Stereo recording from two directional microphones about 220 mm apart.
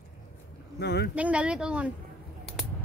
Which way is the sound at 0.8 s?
50° left (ahead or behind).